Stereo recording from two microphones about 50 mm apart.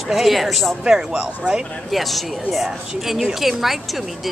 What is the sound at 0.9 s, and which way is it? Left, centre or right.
Speech, centre.